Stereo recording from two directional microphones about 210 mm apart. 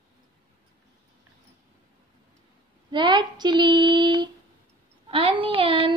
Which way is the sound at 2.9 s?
20° right (ahead or behind).